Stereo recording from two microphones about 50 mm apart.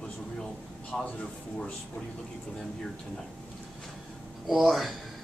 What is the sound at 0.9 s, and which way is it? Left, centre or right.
Speech, centre.